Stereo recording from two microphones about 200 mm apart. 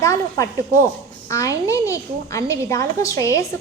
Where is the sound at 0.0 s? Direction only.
15° left (ahead or behind).